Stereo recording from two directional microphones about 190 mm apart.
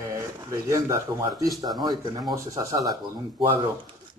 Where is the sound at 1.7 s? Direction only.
Centre (ahead or behind).